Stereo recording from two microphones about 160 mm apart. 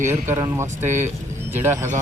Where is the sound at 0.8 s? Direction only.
50° right (ahead or behind).